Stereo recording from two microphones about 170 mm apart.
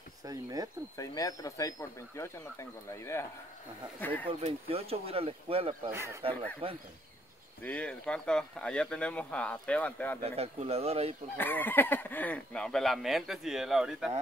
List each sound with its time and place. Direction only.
0.2 s speech: 20° right (ahead or behind)
0.9 s speech: 20° left (ahead or behind)
4.3 s speech: 35° right (ahead or behind)
5.9 s speech: 15° right (ahead or behind)
6.6 s speech: 35° right (ahead or behind)
7.6 s speech: 10° left (ahead or behind)
10.2 s speech: 35° right (ahead or behind)
11.3 s speech: 10° left (ahead or behind)